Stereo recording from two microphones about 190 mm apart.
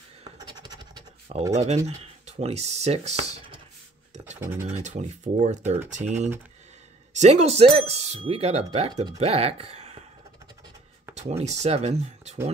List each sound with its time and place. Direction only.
0.5 s scratch: 20° right (ahead or behind)
1.5 s speech: 35° right (ahead or behind)
4.4 s speech: 10° right (ahead or behind)
4.8 s speech: 40° right (ahead or behind)
11.1 s speech: 35° right (ahead or behind)